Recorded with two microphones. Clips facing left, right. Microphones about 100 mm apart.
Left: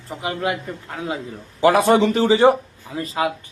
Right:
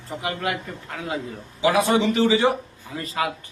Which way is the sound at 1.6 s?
45° left (ahead or behind).